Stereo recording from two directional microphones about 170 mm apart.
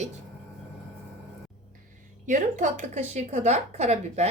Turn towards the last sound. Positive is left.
turn(degrees=-40)  # may be behind; listen again after turning